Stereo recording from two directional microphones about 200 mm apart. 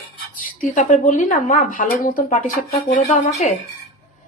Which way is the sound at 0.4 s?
40° left (ahead or behind).